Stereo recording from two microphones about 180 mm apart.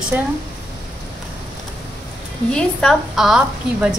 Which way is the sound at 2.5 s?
5° left (ahead or behind).